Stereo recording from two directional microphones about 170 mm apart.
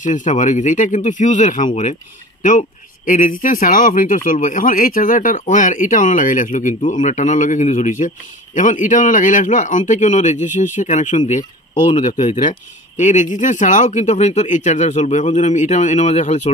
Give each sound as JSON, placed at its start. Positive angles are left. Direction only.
{"t": 0.0, "sound": "speech", "side_deg": 45}
{"t": 3.1, "sound": "speech", "side_deg": 50}
{"t": 11.9, "sound": "speech", "side_deg": 35}
{"t": 12.4, "sound": "speech", "side_deg": 45}